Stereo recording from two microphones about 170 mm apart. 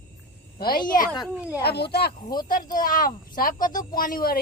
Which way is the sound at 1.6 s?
70° left (ahead or behind).